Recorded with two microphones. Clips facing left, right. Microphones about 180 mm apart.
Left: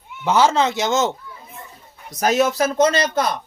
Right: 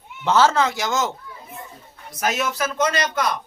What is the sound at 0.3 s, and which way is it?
Speech, 15° left (ahead or behind).